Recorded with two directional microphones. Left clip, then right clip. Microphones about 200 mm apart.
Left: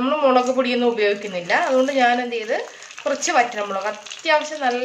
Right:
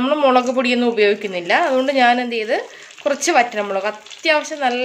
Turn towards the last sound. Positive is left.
turn(degrees=-50)  # may be behind; listen again after turning